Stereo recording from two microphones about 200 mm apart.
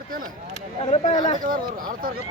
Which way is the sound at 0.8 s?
30° left (ahead or behind).